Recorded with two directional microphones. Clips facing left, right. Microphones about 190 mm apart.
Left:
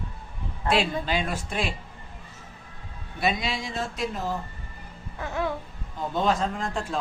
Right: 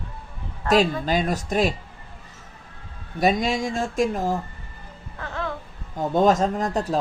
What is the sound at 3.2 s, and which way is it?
Speech, 45° right (ahead or behind).